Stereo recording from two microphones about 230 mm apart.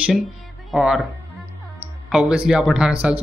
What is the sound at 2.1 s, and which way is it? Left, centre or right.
Speech, centre.